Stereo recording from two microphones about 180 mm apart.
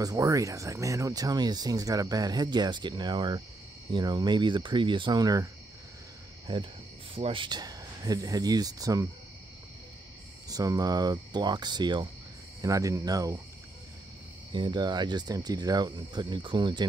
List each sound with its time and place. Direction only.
0.0 s speech: 20° right (ahead or behind)
10.5 s speech: 20° right (ahead or behind)
14.5 s speech: 25° right (ahead or behind)